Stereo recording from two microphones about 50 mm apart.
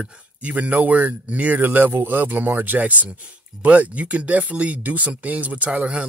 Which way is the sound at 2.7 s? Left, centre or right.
Right.